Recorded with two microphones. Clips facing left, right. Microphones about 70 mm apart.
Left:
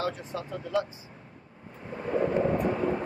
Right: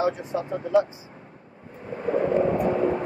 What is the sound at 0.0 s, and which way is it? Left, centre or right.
Speech, right.